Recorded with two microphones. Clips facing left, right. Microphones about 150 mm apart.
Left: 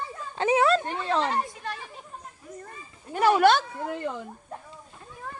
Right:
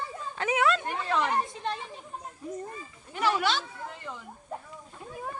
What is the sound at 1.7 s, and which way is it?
Chatter, 20° right (ahead or behind).